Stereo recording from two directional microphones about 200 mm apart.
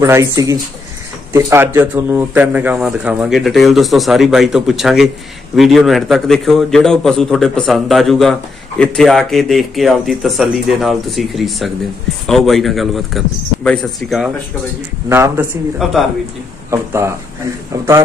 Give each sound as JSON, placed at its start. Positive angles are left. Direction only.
{"t": 0.0, "sound": "a man's voice", "side_deg": -15}
{"t": 15.0, "sound": "speech", "side_deg": -10}
{"t": 16.7, "sound": "speech", "side_deg": -15}